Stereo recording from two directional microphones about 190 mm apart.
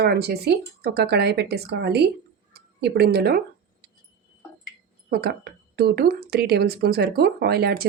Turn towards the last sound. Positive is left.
turn(degrees=-55)  # may be behind; listen again after turning